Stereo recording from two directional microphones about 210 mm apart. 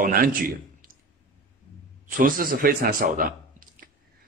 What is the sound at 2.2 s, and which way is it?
A man's voice, 40° right (ahead or behind).